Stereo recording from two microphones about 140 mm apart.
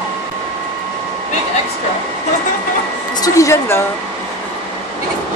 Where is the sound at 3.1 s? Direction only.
20° left (ahead or behind).